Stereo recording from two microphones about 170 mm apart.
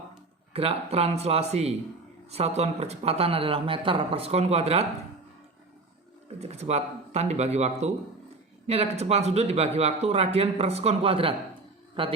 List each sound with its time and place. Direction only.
0.5 s a man's voice: 35° right (ahead or behind)
6.4 s a man's voice: 40° right (ahead or behind)